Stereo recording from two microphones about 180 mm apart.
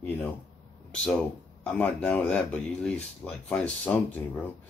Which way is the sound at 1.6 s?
10° left (ahead or behind).